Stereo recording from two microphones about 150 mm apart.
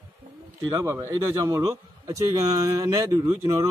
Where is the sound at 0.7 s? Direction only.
25° right (ahead or behind).